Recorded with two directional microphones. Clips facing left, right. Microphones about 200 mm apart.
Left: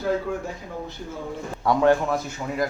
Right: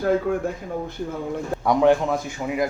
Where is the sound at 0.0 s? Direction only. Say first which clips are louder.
Right 4 dB; 50° right (ahead or behind).